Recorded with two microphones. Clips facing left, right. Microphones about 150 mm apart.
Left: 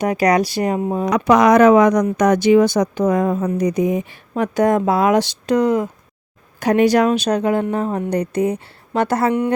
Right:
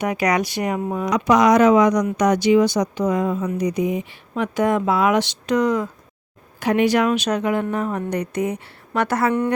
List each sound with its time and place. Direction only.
0.0 s speech: 35° left (ahead or behind)
1.1 s speech: 55° left (ahead or behind); by 5.9 s 25° left (ahead or behind)
6.6 s speech: 40° left (ahead or behind)